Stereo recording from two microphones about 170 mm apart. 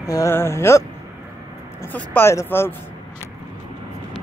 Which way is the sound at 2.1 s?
15° left (ahead or behind).